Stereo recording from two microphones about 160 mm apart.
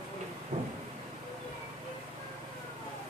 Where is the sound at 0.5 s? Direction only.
45° right (ahead or behind).